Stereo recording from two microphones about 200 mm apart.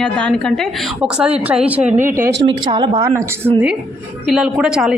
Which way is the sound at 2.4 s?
20° right (ahead or behind).